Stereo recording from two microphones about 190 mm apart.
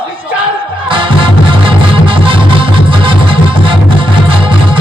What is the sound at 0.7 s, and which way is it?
Music, 25° right (ahead or behind).